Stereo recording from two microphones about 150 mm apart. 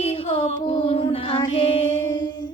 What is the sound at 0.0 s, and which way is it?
Female singing, 40° left (ahead or behind).